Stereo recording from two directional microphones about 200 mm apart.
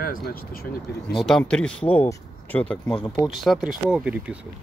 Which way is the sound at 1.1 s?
Centre (ahead or behind).